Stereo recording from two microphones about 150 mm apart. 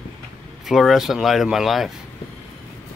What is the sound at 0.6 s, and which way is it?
Speech, centre (ahead or behind).